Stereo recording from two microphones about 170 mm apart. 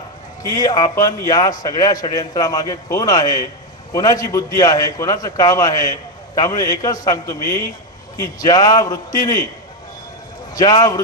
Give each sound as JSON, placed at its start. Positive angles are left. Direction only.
{"t": 0.4, "sound": "a man's voice", "side_deg": 20}
{"t": 10.5, "sound": "a man's voice", "side_deg": 20}